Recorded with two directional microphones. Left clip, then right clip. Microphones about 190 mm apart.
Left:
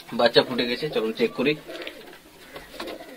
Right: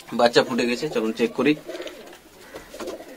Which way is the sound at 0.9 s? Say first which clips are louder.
Even; 20° right (ahead or behind).